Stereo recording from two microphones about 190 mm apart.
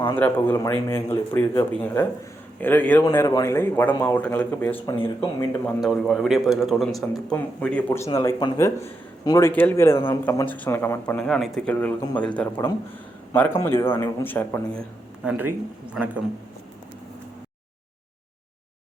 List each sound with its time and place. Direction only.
0.2 s a man's voice: 10° left (ahead or behind)
5.8 s a man's voice: centre (ahead or behind)
15.2 s speech: 5° right (ahead or behind)